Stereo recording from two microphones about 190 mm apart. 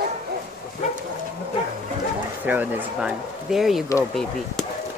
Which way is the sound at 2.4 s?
10° right (ahead or behind).